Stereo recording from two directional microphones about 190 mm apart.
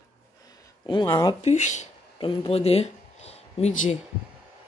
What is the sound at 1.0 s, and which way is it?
Speech, 20° left (ahead or behind).